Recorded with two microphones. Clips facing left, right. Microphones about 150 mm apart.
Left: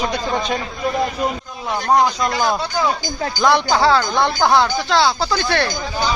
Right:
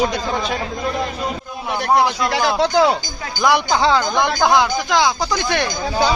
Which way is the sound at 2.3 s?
80° right.